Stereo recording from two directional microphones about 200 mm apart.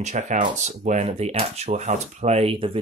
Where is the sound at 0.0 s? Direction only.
35° right (ahead or behind).